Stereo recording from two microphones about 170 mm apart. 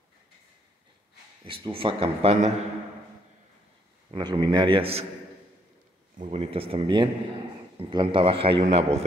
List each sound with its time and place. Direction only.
1.4 s speech: 30° right (ahead or behind)
4.1 s speech: 25° right (ahead or behind)
6.1 s speech: 35° right (ahead or behind)